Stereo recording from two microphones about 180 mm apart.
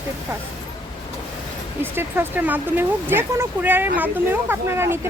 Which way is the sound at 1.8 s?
10° right (ahead or behind).